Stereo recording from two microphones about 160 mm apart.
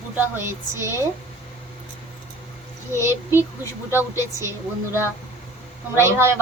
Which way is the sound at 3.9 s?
15° right (ahead or behind).